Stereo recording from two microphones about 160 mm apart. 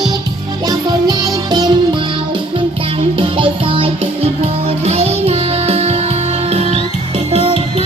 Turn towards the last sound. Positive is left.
turn(degrees=-40)  # may be behind; listen again after turning